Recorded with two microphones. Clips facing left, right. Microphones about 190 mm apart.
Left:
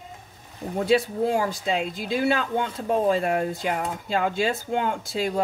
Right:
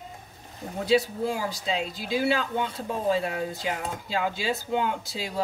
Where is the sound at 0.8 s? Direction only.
55° left (ahead or behind).